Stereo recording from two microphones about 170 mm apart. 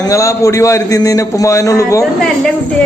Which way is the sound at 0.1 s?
20° left (ahead or behind).